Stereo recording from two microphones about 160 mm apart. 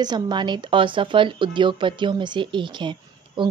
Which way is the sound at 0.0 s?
25° right (ahead or behind).